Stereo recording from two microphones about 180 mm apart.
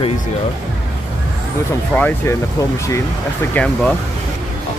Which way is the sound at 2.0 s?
10° left (ahead or behind).